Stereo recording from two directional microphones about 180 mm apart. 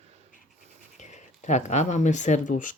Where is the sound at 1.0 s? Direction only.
40° left (ahead or behind).